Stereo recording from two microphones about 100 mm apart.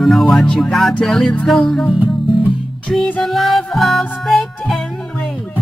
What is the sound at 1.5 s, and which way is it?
Music, 5° left (ahead or behind).